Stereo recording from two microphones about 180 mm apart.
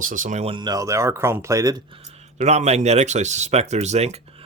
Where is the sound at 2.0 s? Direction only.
40° right (ahead or behind).